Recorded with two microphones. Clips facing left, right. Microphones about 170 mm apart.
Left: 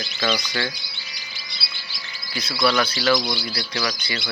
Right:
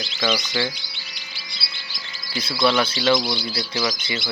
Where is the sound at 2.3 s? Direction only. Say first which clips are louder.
Right 1 dB; 30° right (ahead or behind).